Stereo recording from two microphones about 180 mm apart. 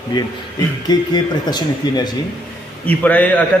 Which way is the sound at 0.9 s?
25° left (ahead or behind).